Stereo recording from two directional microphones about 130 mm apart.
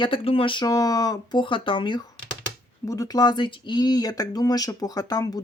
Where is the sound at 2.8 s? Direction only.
25° left (ahead or behind).